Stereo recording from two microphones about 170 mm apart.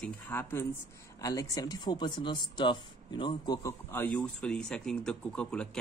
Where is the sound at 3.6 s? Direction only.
15° left (ahead or behind).